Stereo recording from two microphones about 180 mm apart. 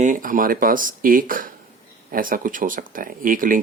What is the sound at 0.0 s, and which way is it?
Speech, 45° right (ahead or behind).